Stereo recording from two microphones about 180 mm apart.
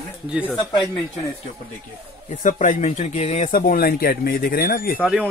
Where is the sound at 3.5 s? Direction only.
55° left (ahead or behind).